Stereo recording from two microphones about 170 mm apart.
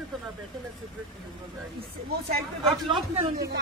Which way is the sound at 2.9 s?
35° right (ahead or behind).